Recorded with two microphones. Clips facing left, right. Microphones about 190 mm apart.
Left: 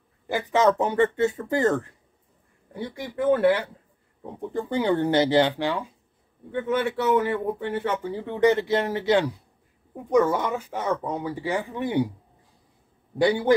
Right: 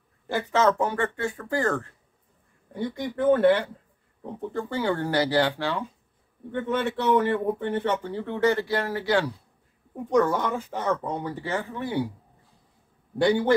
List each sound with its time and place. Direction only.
0.3 s speech: 15° left (ahead or behind)
2.7 s speech: 10° left (ahead or behind)
10.1 s speech: 5° left (ahead or behind)